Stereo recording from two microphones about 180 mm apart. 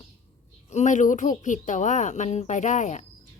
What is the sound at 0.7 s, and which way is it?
Speech, 40° left (ahead or behind).